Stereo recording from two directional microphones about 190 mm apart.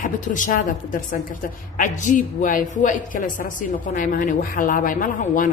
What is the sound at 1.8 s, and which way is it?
A woman's voice, 40° left (ahead or behind).